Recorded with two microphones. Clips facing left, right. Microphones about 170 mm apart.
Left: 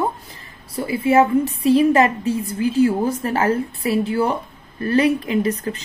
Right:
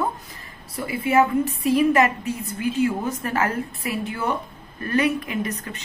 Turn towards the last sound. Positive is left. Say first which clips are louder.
# left 7 dB
turn(degrees=35)  # may be behind; listen again after turning